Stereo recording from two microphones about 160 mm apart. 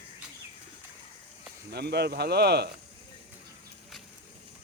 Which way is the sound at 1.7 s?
90° right.